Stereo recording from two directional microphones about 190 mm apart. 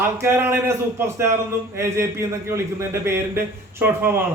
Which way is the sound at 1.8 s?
15° right (ahead or behind).